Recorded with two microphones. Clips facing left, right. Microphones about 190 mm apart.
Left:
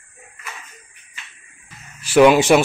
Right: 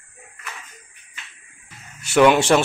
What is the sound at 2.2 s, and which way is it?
Speech, 10° left (ahead or behind).